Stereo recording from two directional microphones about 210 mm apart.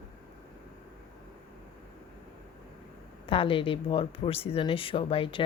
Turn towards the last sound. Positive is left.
turn(degrees=25)  # may be behind; listen again after turning